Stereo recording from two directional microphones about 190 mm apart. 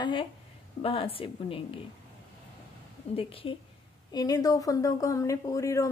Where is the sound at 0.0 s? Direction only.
25° left (ahead or behind).